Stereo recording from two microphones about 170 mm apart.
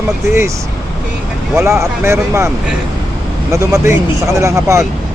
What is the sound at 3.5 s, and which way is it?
Speech, 15° right (ahead or behind).